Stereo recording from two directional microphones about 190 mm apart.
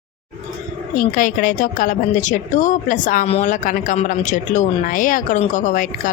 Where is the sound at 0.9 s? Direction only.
45° left (ahead or behind).